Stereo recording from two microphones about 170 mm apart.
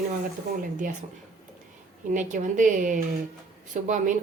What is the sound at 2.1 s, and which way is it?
Speech, 50° right (ahead or behind).